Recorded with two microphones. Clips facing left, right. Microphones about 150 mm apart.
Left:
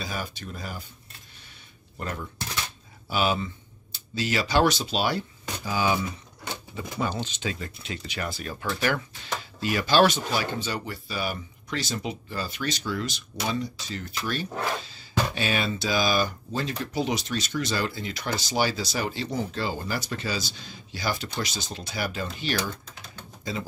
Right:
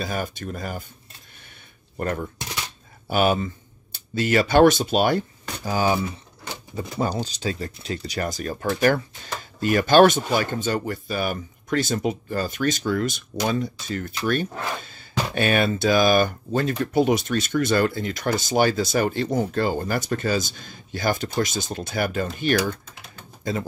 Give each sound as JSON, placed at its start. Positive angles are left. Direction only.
{"t": 0.0, "sound": "speech", "side_deg": -50}
{"t": 2.0, "sound": "speech", "side_deg": -50}